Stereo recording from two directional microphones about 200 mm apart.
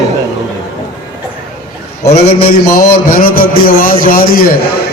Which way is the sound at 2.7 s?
45° left (ahead or behind).